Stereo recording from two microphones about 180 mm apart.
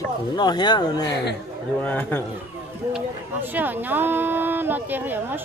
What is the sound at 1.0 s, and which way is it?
Speech, 70° left (ahead or behind).